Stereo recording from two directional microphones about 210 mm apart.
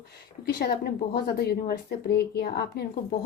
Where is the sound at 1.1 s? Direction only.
45° left (ahead or behind).